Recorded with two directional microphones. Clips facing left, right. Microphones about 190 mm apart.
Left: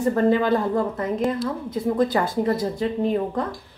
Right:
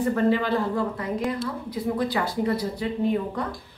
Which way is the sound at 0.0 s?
45° left (ahead or behind).